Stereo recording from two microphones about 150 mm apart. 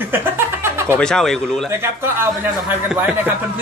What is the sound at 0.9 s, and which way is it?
Speech, 5° left (ahead or behind).